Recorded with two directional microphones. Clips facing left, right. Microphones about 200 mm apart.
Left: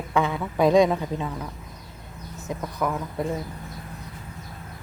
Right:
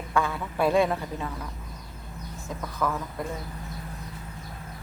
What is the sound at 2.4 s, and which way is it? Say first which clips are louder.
Speech: left 3 dB; 20° left (ahead or behind).